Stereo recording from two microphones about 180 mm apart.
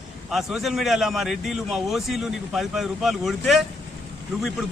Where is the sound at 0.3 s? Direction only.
Centre (ahead or behind).